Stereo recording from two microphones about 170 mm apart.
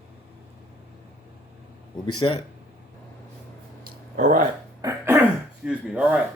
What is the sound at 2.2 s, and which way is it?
Speech, 30° left (ahead or behind).